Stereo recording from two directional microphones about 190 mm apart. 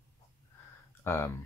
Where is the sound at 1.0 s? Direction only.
10° left (ahead or behind).